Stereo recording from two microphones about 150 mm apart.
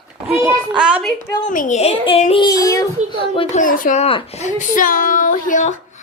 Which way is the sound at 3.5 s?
65° left (ahead or behind).